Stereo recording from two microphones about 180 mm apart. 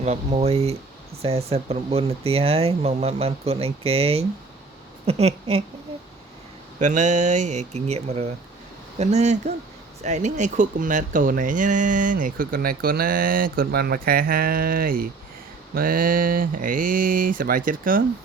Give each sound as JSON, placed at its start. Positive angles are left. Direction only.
{"t": 0.0, "sound": "speech", "side_deg": -35}
{"t": 6.7, "sound": "speech", "side_deg": -40}